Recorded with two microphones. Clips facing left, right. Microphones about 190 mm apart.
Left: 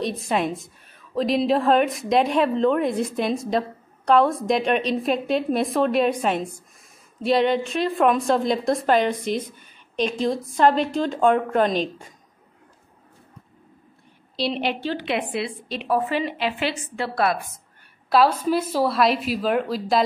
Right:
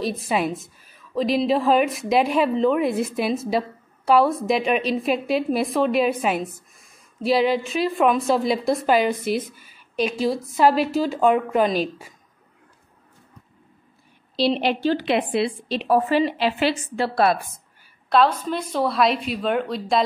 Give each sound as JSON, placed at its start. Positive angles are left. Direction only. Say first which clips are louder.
{"t": 0.0, "sound": "a woman's voice", "louder": "even", "side_deg": 0}
{"t": 14.3, "sound": "a woman's voice", "louder": "right 4 dB", "side_deg": -35}
{"t": 18.1, "sound": "a woman's voice", "louder": "left 1 dB", "side_deg": 5}